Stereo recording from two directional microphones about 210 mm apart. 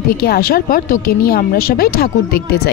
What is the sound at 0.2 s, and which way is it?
A woman's voice, 45° left (ahead or behind).